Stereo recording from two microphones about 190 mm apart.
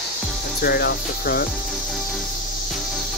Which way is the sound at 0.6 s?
55° left (ahead or behind).